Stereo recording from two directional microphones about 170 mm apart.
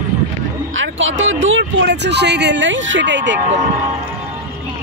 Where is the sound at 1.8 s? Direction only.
90° right.